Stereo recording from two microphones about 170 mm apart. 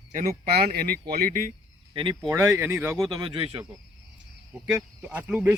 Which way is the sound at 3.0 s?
25° right (ahead or behind).